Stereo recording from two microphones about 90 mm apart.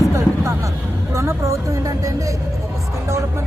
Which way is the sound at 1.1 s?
35° right (ahead or behind).